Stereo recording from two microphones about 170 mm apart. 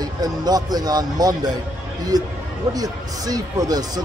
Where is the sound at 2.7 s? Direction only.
20° right (ahead or behind).